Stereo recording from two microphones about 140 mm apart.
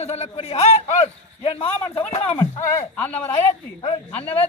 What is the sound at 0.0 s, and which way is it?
Speech, 50° left (ahead or behind).